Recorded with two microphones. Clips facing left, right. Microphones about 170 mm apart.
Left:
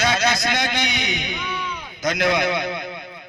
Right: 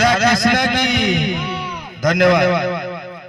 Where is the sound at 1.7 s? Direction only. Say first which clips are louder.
Right 9 dB; 90° right.